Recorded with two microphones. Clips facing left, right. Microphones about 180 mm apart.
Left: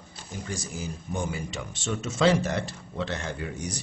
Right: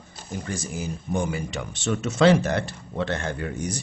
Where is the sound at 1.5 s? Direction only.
65° right (ahead or behind).